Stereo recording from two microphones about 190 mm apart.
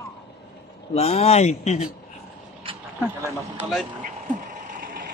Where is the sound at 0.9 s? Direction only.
35° left (ahead or behind).